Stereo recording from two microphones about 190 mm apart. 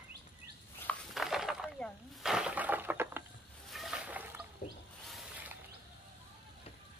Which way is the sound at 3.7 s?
Centre (ahead or behind).